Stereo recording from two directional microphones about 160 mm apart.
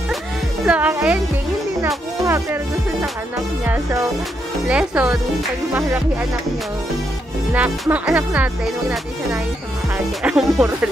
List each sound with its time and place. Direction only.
0.7 s music: 10° right (ahead or behind)
2.2 s music: 15° right (ahead or behind)
3.6 s speech: 10° right (ahead or behind)
7.5 s speech: 10° right (ahead or behind)
10.2 s speech: 5° right (ahead or behind)